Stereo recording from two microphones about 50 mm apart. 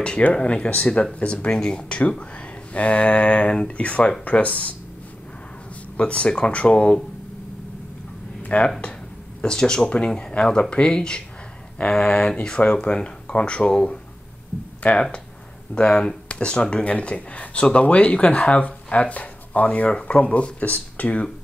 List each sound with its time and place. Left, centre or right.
0.3 s speech: left
5.9 s speech: left
8.5 s speech: left
15.8 s speech: centre